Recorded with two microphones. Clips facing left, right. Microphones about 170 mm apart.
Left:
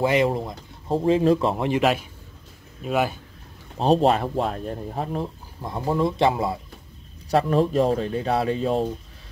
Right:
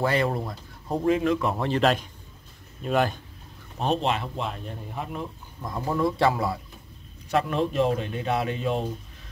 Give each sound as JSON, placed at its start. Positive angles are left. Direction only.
{"t": 0.0, "sound": "speech", "side_deg": 15}
{"t": 1.6, "sound": "a man's voice", "side_deg": 10}
{"t": 3.7, "sound": "speech", "side_deg": 35}
{"t": 7.2, "sound": "speech", "side_deg": 35}